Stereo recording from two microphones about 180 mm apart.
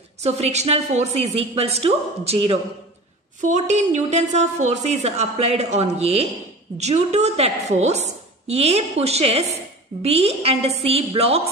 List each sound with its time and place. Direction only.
0.2 s a woman's voice: 35° right (ahead or behind)
3.3 s a woman's voice: 40° right (ahead or behind)